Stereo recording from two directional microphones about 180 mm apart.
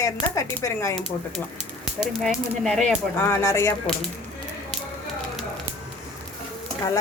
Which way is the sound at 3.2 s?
15° left (ahead or behind).